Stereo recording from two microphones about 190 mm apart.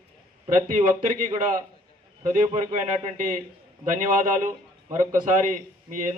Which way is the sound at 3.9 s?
45° right (ahead or behind).